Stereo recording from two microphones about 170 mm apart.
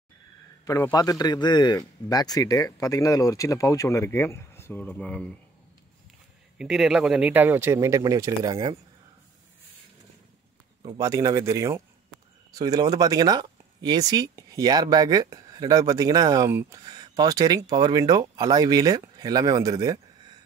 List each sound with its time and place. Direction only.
0.7 s a man's voice: 20° left (ahead or behind)
6.6 s speech: 5° right (ahead or behind); by 8.7 s 25° right (ahead or behind)
10.9 s speech: 20° right (ahead or behind)